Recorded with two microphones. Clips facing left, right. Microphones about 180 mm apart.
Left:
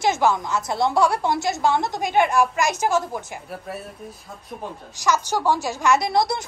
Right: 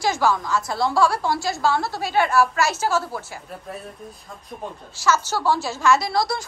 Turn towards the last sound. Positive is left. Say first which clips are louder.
# left 2 dB
turn(degrees=20)  # may be behind; listen again after turning